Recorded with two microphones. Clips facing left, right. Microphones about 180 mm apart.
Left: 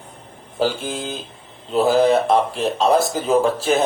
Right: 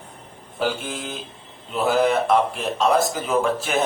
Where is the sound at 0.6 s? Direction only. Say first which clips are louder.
Left 4 dB; 30° left (ahead or behind).